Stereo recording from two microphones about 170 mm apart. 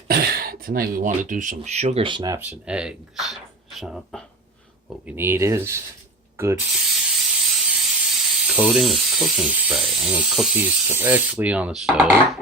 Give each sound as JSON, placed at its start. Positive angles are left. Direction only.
{"t": 0.1, "sound": "speech", "side_deg": -60}
{"t": 2.4, "sound": "speech", "side_deg": -5}
{"t": 5.0, "sound": "speech", "side_deg": -15}
{"t": 6.3, "sound": "ratchet", "side_deg": -15}
{"t": 6.8, "sound": "speech", "side_deg": 0}